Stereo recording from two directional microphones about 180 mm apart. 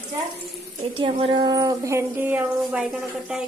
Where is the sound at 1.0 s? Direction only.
30° right (ahead or behind); by 2.8 s 10° right (ahead or behind).